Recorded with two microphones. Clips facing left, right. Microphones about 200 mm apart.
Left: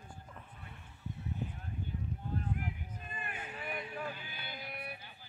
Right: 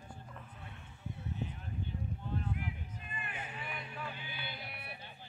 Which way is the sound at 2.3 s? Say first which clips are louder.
Left 1 dB; 40° left (ahead or behind).